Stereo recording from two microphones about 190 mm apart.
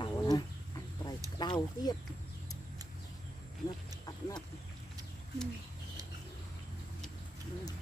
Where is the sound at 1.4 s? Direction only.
20° left (ahead or behind).